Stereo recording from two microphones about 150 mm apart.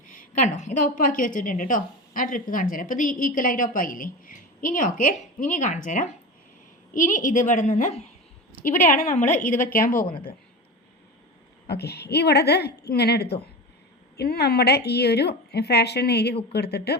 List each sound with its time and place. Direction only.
0.0 s a woman's voice: 60° left (ahead or behind)
11.7 s a woman's voice: 90° left